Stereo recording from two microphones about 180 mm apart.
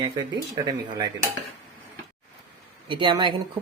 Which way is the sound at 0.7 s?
25° right (ahead or behind).